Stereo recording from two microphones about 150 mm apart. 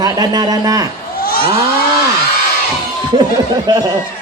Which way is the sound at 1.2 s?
80° left.